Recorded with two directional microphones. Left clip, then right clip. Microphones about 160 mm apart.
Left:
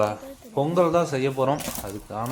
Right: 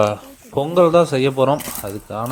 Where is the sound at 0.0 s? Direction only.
30° right (ahead or behind).